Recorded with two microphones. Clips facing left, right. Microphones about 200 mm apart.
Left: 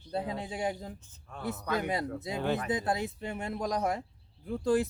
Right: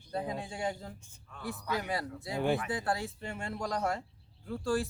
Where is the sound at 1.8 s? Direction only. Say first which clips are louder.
Left 4 dB; 20° left (ahead or behind).